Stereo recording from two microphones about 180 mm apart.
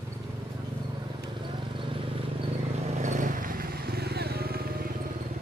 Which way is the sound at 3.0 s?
45° right (ahead or behind).